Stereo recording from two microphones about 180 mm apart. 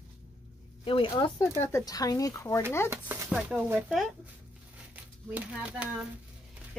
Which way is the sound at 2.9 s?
15° right (ahead or behind).